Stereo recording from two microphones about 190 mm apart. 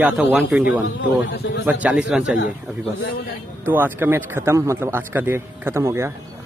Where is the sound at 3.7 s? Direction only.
10° right (ahead or behind).